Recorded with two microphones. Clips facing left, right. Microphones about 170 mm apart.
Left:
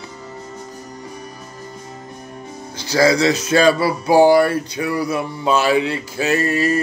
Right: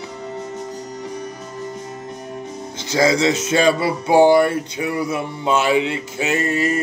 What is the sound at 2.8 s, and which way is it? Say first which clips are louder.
Speech: left 2 dB; 20° right (ahead or behind).